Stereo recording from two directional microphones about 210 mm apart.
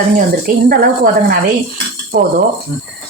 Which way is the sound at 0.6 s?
45° right (ahead or behind).